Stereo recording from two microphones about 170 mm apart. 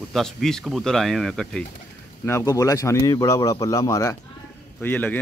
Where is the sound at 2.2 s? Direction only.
15° left (ahead or behind).